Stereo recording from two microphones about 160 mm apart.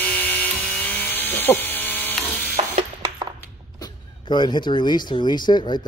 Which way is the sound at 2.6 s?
40° right (ahead or behind).